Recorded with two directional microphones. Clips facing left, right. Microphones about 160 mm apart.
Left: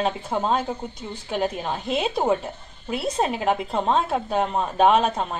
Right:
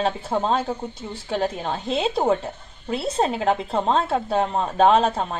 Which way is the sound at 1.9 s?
30° right (ahead or behind).